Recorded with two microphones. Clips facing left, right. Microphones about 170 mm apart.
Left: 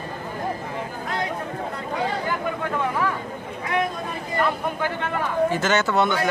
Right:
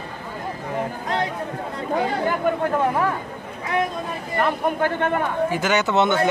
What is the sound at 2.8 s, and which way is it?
Speech, 45° right (ahead or behind).